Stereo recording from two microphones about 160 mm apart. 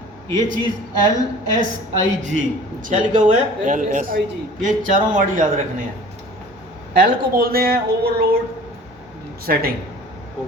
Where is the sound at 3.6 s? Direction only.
55° right (ahead or behind).